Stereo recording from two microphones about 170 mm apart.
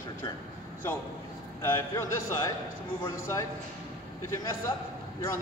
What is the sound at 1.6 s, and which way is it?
A man's voice, 15° left (ahead or behind).